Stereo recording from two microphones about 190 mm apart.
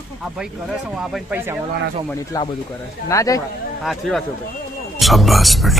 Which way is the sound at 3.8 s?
Centre (ahead or behind).